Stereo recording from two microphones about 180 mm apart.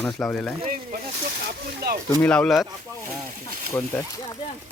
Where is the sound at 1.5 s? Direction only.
60° right (ahead or behind).